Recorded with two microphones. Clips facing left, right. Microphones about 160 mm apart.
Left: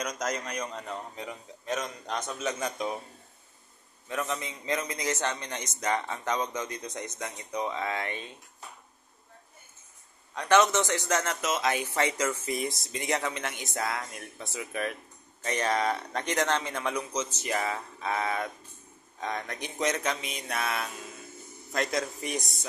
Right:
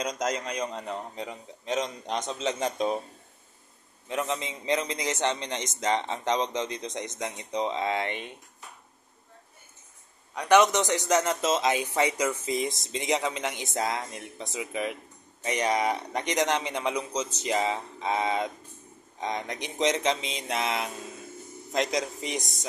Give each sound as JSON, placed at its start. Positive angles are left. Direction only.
{"t": 0.0, "sound": "a man's voice", "side_deg": -20}
{"t": 4.1, "sound": "a man's voice", "side_deg": -20}
{"t": 10.3, "sound": "a man's voice", "side_deg": -15}